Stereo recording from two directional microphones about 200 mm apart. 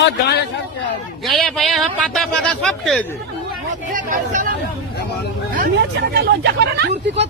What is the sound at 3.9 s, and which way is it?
Speech, 40° right (ahead or behind).